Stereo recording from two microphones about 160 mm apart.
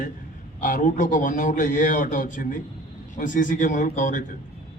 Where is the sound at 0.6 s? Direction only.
55° left (ahead or behind).